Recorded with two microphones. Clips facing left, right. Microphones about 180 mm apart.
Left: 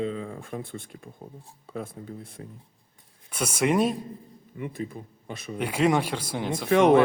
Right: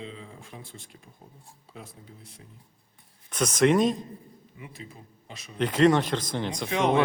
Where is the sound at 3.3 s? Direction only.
10° left (ahead or behind).